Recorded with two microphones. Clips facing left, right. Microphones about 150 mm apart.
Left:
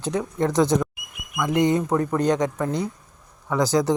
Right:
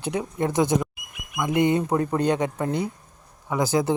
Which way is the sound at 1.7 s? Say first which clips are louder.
Left 1 dB; 25° right (ahead or behind).